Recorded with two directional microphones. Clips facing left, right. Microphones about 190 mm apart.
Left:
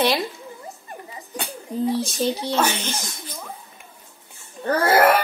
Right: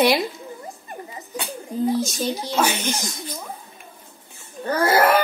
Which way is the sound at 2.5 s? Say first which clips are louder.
Right 1 dB; 10° right (ahead or behind).